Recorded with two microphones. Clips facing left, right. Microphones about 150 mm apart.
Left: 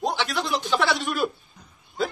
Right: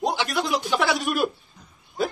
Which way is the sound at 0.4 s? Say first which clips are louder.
Right 1 dB; 5° right (ahead or behind).